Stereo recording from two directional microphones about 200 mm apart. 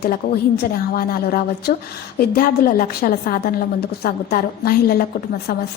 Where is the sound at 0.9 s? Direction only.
50° left (ahead or behind).